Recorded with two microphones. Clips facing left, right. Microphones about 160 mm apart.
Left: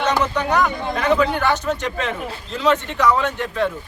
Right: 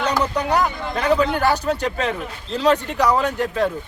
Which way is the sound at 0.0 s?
35° right (ahead or behind).